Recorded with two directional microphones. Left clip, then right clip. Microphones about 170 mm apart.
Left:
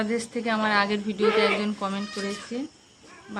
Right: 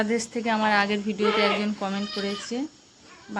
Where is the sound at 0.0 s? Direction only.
15° right (ahead or behind).